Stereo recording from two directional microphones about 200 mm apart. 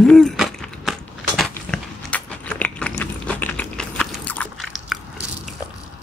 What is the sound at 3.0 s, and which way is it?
Biting, 10° left (ahead or behind).